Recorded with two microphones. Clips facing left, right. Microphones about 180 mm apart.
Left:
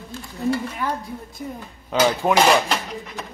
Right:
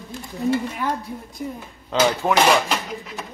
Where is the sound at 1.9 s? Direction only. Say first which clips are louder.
Left 1 dB; 10° left (ahead or behind).